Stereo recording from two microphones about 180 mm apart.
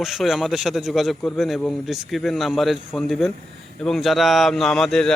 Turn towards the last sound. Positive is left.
turn(degrees=5)  # may be behind; listen again after turning